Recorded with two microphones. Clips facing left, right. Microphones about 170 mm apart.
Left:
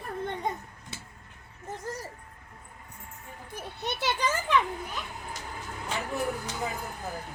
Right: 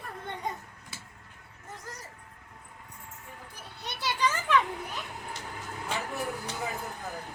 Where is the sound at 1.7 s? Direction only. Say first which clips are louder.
Left 8 dB; 30° left (ahead or behind).